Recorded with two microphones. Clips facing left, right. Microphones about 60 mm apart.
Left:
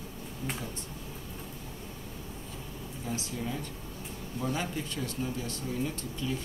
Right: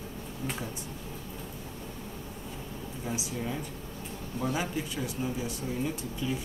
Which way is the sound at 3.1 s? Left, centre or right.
Centre.